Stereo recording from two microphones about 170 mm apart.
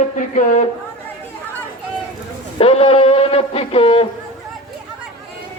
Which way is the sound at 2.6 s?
35° left (ahead or behind).